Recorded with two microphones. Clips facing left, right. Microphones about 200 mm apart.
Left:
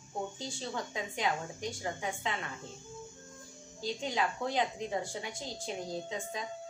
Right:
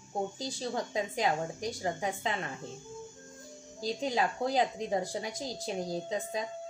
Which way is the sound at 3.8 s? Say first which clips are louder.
Right 3 dB; 35° right (ahead or behind).